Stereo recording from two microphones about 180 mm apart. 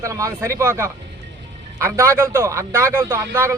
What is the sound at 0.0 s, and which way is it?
A man's voice, 15° right (ahead or behind).